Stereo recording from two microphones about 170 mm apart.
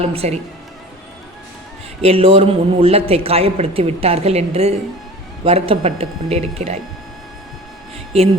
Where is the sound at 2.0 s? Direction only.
35° right (ahead or behind).